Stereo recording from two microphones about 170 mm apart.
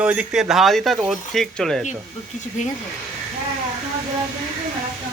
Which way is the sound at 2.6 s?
45° left (ahead or behind).